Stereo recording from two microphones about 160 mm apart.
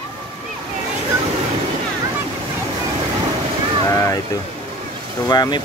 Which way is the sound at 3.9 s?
20° left (ahead or behind).